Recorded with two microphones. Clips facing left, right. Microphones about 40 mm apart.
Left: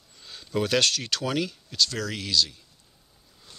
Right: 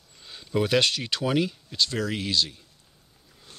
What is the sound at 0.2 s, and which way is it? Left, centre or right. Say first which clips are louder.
Speech: right 2 dB; centre.